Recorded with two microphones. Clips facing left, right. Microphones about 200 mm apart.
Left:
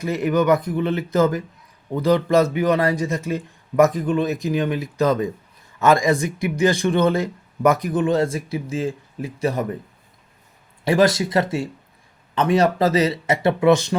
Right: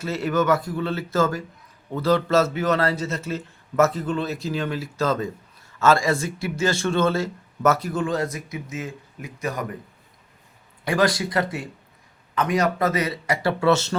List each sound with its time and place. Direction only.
0.0 s speech: 15° left (ahead or behind)
10.8 s speech: 25° left (ahead or behind)